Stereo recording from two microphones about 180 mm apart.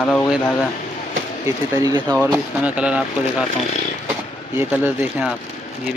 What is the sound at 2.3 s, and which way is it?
Speech, 5° right (ahead or behind).